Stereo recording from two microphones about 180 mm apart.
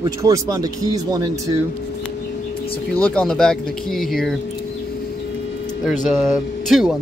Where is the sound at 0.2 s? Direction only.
20° right (ahead or behind).